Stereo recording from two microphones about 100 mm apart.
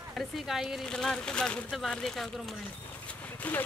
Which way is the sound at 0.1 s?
Centre (ahead or behind).